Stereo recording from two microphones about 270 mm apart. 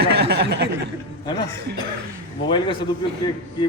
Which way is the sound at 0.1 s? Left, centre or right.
Right.